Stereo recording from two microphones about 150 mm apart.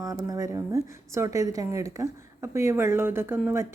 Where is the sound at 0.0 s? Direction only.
25° right (ahead or behind).